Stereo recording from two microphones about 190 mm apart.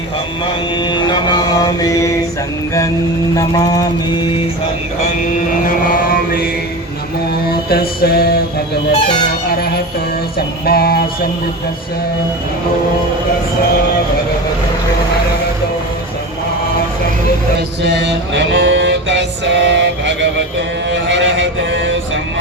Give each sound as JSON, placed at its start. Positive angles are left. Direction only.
{"t": 0.8, "sound": "mantra", "side_deg": 25}
{"t": 3.3, "sound": "mantra", "side_deg": 20}
{"t": 7.5, "sound": "mantra", "side_deg": 55}
{"t": 8.9, "sound": "mantra", "side_deg": 25}
{"t": 10.3, "sound": "music", "side_deg": 55}
{"t": 17.8, "sound": "music", "side_deg": -65}
{"t": 20.9, "sound": "a sound", "side_deg": -65}